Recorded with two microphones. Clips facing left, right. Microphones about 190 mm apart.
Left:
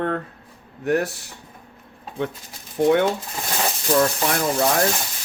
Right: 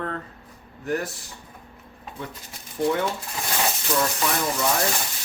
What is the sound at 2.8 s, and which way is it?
Speech, 65° left (ahead or behind).